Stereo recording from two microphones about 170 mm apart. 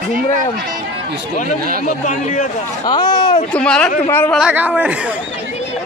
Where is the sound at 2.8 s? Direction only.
25° left (ahead or behind).